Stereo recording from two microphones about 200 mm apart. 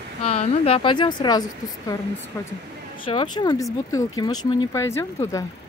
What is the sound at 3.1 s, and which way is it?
Speech, 25° left (ahead or behind).